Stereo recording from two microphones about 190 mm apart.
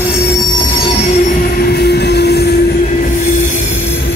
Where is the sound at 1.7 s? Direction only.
60° left (ahead or behind).